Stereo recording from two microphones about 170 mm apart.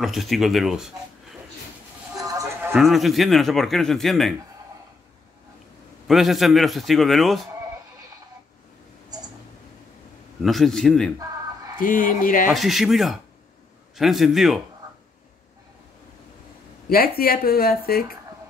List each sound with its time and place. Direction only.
0.0 s a man's voice: centre (ahead or behind)
2.1 s music: 20° right (ahead or behind)
2.7 s a man's voice: centre (ahead or behind)
6.0 s a man's voice: centre (ahead or behind)
10.4 s a man's voice: centre (ahead or behind)
11.8 s speech: 55° left (ahead or behind)
12.5 s a man's voice: centre (ahead or behind)
16.9 s speech: 60° left (ahead or behind)